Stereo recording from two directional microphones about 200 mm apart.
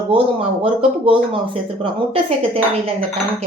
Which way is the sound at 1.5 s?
30° right (ahead or behind).